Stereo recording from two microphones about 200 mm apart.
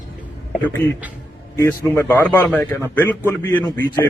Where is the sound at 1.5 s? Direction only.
15° left (ahead or behind).